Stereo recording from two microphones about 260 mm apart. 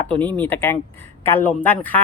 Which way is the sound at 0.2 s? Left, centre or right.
Centre.